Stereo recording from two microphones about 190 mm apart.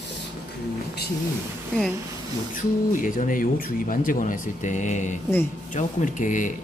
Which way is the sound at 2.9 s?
45° left (ahead or behind).